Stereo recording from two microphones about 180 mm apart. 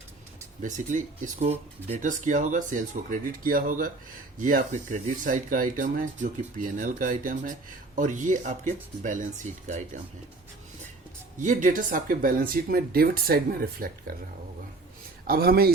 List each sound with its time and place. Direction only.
0.6 s speech: 45° right (ahead or behind)
11.3 s speech: 45° right (ahead or behind)
15.3 s a man's voice: 55° right (ahead or behind)